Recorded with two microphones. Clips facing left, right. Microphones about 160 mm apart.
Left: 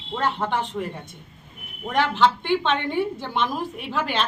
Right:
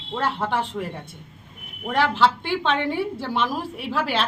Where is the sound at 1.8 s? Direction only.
5° right (ahead or behind).